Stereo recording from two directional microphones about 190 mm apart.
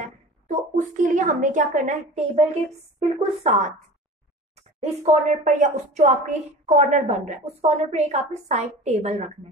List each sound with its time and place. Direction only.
0.0 s a woman's voice: 40° right (ahead or behind)
5.0 s a woman's voice: 40° right (ahead or behind)